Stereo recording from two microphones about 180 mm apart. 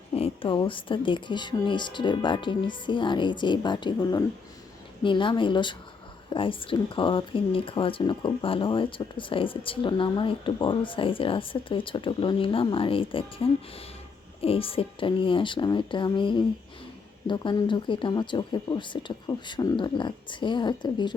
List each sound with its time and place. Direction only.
0.1 s speech: 30° left (ahead or behind)